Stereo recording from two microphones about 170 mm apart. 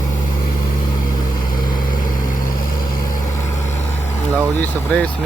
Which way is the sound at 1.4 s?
55° left (ahead or behind).